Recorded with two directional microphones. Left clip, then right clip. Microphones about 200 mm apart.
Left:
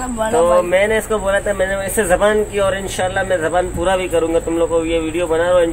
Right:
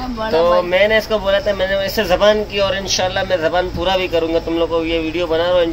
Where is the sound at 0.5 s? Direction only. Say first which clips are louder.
Even; 5° right (ahead or behind).